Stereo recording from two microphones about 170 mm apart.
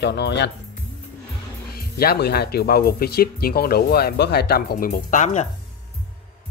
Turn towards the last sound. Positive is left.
turn(degrees=45)  # may be behind; listen again after turning